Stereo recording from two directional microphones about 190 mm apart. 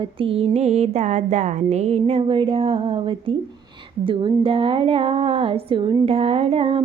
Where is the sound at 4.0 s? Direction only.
25° right (ahead or behind).